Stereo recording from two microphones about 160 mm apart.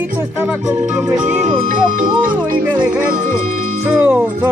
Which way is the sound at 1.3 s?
55° right (ahead or behind).